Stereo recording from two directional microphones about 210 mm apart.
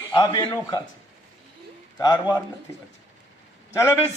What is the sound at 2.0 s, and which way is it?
Speech, 20° left (ahead or behind).